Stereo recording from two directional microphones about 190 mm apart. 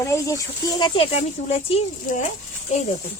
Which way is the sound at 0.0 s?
15° left (ahead or behind).